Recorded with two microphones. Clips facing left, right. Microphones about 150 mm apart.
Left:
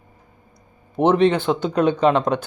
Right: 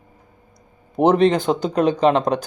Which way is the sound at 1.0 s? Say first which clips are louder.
Right 1 dB; 35° right (ahead or behind).